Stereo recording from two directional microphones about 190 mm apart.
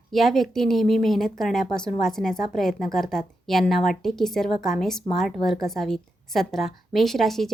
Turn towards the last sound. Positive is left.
turn(degrees=0)  # may be behind; listen again after turning